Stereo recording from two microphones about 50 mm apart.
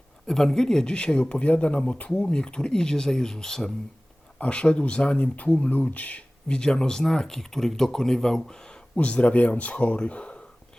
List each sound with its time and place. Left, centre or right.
0.3 s speech: centre
4.4 s speech: left
9.0 s speech: left